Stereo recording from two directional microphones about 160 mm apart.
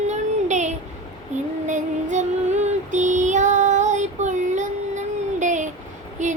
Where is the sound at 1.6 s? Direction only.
50° right (ahead or behind).